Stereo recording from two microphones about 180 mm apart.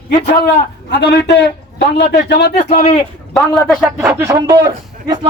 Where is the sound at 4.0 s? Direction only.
15° right (ahead or behind).